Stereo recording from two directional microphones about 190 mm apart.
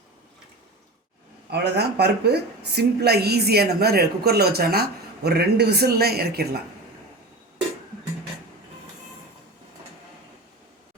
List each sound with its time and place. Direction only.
1.5 s a woman's voice: 60° right (ahead or behind)